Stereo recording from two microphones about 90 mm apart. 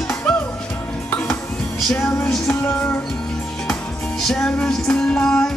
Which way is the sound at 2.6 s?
25° left (ahead or behind).